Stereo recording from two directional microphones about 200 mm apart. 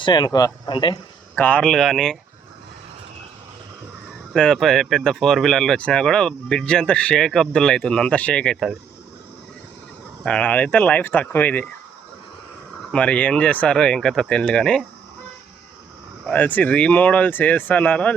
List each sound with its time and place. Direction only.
0.0 s speech: 20° left (ahead or behind)
1.4 s speech: 5° left (ahead or behind)
4.4 s speech: centre (ahead or behind)
10.2 s speech: 5° left (ahead or behind)
12.9 s speech: 5° left (ahead or behind)
16.2 s speech: 5° left (ahead or behind)